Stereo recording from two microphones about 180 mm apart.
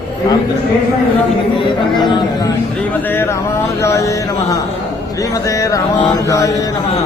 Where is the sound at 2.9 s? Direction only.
10° left (ahead or behind).